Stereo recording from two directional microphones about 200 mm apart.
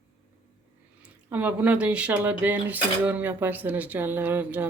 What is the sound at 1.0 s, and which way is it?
Speech, 10° right (ahead or behind).